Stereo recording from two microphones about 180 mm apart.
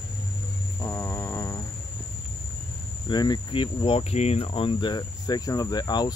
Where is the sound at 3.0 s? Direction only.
25° left (ahead or behind).